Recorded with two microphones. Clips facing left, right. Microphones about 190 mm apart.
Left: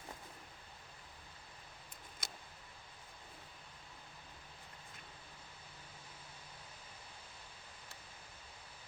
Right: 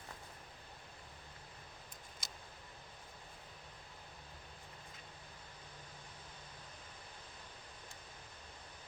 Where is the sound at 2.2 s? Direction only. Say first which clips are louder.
Left 4 dB; 55° left (ahead or behind).